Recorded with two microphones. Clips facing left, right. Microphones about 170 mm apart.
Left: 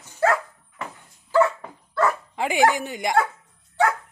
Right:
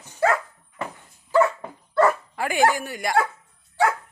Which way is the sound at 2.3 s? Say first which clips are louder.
Left 1 dB; 20° left (ahead or behind).